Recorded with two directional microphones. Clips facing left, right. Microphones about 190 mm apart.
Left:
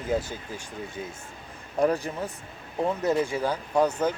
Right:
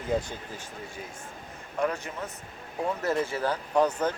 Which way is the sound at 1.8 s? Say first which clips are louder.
Left 5 dB; 35° left (ahead or behind).